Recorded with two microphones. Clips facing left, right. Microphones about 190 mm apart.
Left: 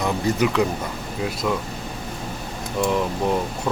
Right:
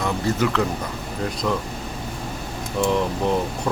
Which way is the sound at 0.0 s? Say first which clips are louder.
Left 1 dB; 15° left (ahead or behind).